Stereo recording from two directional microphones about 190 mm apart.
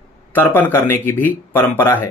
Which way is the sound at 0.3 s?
10° left (ahead or behind).